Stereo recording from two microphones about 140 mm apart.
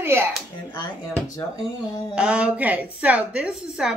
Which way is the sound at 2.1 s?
5° right (ahead or behind).